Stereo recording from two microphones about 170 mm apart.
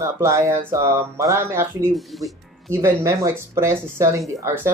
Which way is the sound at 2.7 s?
15° right (ahead or behind).